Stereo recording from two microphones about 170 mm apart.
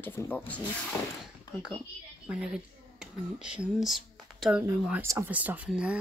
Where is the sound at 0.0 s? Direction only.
10° left (ahead or behind).